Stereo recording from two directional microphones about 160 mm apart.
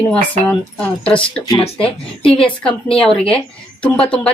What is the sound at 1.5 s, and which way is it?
Speech, 35° left (ahead or behind).